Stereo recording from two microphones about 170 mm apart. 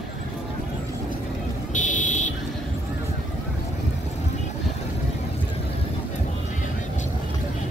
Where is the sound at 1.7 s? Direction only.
50° left (ahead or behind).